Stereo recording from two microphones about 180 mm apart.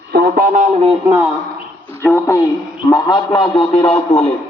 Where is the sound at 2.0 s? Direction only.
10° left (ahead or behind).